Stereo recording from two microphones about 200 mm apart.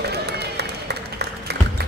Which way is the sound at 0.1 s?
55° right (ahead or behind).